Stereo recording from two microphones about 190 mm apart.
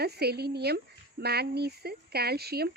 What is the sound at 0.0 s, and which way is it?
A woman's voice, 55° right (ahead or behind).